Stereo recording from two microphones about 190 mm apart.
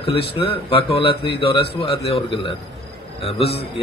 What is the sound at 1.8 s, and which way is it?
Mantra, 30° left (ahead or behind).